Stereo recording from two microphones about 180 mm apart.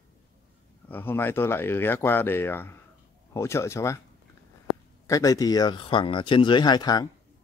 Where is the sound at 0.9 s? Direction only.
10° left (ahead or behind).